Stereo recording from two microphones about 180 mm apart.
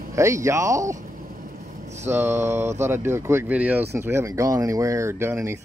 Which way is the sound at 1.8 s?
40° right (ahead or behind).